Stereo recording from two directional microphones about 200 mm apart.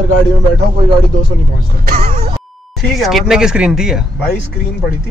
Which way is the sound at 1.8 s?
45° right (ahead or behind).